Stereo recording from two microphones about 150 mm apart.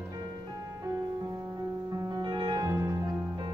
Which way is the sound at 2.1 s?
30° right (ahead or behind).